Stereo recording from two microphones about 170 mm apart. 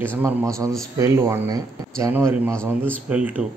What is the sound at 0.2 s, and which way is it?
Speech, 15° right (ahead or behind).